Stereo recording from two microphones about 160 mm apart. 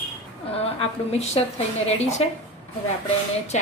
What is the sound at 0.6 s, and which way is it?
A woman's voice, 40° left (ahead or behind).